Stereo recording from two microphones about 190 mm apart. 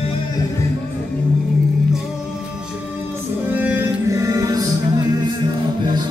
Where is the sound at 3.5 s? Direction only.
10° right (ahead or behind).